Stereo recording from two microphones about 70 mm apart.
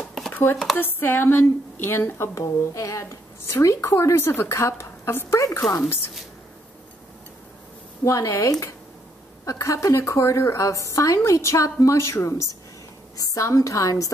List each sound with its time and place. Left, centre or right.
0.3 s a sound: left
0.7 s a woman's voice: left
8.0 s a woman's voice: left
13.2 s a woman's voice: left